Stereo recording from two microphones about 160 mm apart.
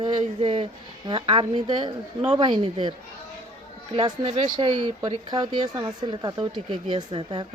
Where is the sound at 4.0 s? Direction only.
35° right (ahead or behind).